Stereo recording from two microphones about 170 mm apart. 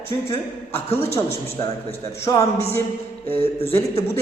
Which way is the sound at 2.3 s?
20° left (ahead or behind).